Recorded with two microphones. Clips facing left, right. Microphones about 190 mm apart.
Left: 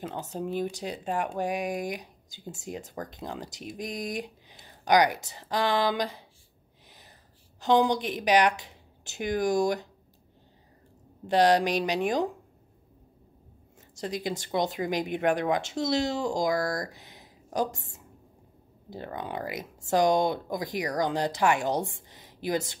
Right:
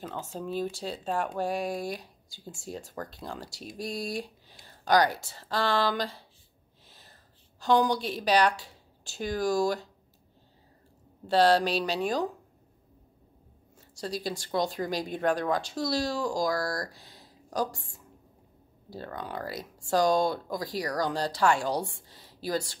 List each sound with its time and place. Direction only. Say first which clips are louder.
0.0 s speech: left 3 dB; 20° left (ahead or behind)
6.9 s whispering: left 2 dB; 15° left (ahead or behind)
7.6 s a woman's voice: left 1 dB; 20° left (ahead or behind)
11.2 s speech: left 1 dB; 15° left (ahead or behind)
13.7 s a woman's voice: left 1 dB; 20° left (ahead or behind)